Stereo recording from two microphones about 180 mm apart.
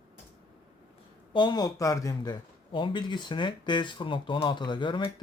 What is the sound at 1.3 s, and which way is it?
Speech, 25° left (ahead or behind).